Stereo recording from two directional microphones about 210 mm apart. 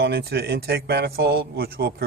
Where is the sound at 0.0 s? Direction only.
50° right (ahead or behind).